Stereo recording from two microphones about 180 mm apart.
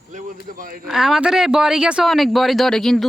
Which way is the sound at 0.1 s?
45° right (ahead or behind).